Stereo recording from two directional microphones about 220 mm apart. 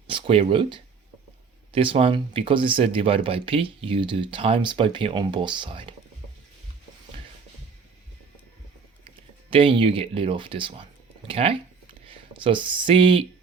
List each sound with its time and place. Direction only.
0.1 s speech: 25° right (ahead or behind)
9.5 s speech: 25° right (ahead or behind)